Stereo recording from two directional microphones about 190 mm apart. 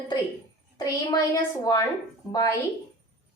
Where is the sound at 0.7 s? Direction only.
20° left (ahead or behind).